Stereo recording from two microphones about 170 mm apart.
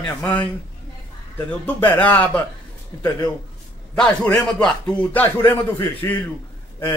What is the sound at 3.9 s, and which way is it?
A man's voice, 5° left (ahead or behind).